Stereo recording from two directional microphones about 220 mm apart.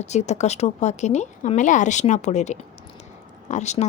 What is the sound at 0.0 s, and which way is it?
A woman's voice, 30° left (ahead or behind).